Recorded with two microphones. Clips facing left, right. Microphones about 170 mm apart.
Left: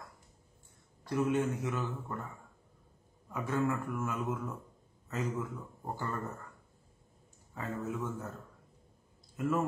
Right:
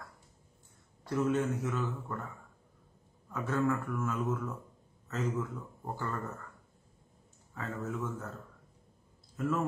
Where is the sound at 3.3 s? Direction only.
10° left (ahead or behind).